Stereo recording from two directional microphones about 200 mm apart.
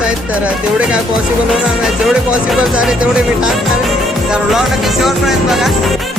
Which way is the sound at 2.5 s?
5° right (ahead or behind).